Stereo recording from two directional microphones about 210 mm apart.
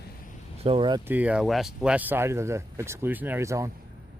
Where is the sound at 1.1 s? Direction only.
5° right (ahead or behind).